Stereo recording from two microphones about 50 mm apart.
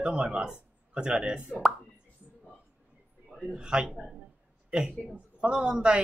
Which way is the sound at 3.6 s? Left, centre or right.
Centre.